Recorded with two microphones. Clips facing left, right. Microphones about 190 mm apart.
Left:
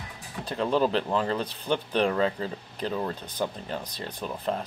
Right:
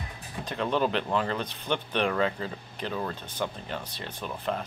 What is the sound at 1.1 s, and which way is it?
Speech, 30° left (ahead or behind).